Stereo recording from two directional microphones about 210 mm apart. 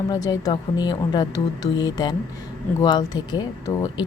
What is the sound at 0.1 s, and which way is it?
Speech, 20° left (ahead or behind).